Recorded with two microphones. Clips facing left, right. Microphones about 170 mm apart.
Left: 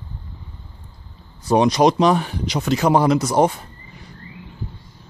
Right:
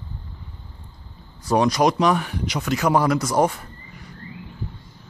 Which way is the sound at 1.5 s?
25° left (ahead or behind).